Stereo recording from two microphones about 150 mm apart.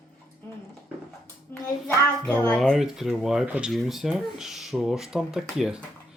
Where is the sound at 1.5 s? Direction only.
15° left (ahead or behind).